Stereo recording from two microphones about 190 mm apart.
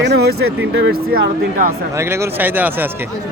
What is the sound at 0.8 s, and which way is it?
Speech, 50° right (ahead or behind).